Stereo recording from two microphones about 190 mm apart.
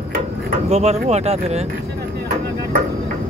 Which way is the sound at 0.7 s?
35° right (ahead or behind).